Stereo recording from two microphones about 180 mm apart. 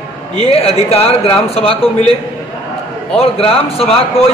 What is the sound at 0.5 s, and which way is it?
Speech, 35° left (ahead or behind).